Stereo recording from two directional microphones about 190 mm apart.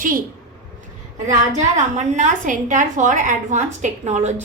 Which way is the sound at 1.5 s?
40° right (ahead or behind).